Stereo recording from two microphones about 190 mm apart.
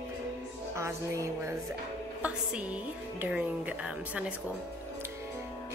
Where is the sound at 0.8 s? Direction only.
15° right (ahead or behind).